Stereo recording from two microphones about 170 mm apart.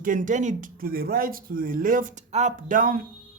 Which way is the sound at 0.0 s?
50° right (ahead or behind).